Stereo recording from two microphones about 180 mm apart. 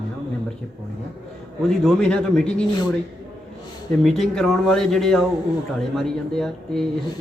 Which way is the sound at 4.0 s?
Centre (ahead or behind).